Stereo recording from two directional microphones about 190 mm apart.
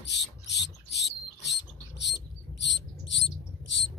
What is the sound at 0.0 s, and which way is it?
Speech, 65° left (ahead or behind).